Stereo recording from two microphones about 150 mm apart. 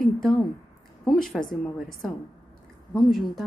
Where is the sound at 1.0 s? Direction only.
Centre (ahead or behind).